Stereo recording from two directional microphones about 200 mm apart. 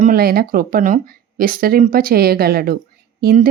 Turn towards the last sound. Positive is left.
turn(degrees=-45)  # may be behind; listen again after turning